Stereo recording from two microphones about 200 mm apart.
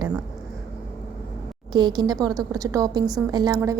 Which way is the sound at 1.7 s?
20° right (ahead or behind).